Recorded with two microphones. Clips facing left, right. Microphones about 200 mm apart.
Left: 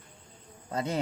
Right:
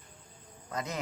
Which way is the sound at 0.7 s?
30° left (ahead or behind).